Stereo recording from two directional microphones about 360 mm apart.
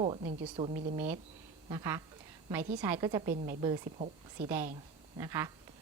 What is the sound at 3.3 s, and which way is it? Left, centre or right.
A woman's voice, right.